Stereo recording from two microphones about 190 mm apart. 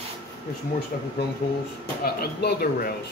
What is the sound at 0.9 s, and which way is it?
Speech, 45° left (ahead or behind).